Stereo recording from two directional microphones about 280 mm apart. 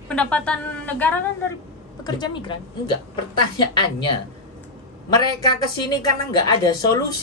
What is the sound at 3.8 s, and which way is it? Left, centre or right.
Speech, centre.